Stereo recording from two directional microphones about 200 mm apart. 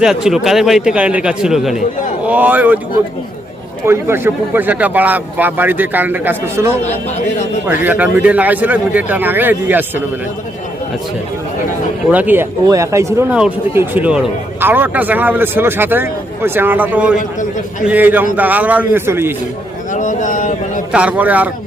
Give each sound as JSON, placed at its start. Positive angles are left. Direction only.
{"t": 0.0, "sound": "a man's voice", "side_deg": -5}
{"t": 3.8, "sound": "speech", "side_deg": -10}
{"t": 7.7, "sound": "speech", "side_deg": -10}
{"t": 12.1, "sound": "speech", "side_deg": -10}
{"t": 19.9, "sound": "a sound", "side_deg": 40}
{"t": 20.9, "sound": "speech", "side_deg": -5}